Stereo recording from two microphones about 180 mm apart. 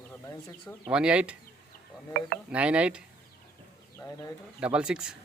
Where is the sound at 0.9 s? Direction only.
5° right (ahead or behind).